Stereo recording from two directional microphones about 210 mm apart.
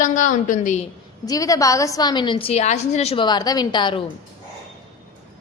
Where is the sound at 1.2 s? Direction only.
15° left (ahead or behind).